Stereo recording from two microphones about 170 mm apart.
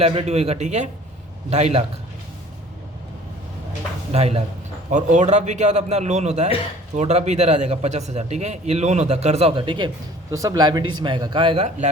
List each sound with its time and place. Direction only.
0.0 s speech: 35° right (ahead or behind)
4.1 s a man's voice: 40° right (ahead or behind)